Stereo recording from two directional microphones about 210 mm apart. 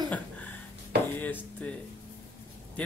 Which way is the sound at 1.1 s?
10° left (ahead or behind).